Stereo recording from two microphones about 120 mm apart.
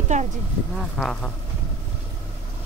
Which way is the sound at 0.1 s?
80° right.